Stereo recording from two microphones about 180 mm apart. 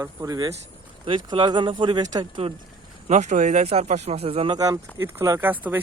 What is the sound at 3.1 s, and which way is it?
Speech, 40° right (ahead or behind).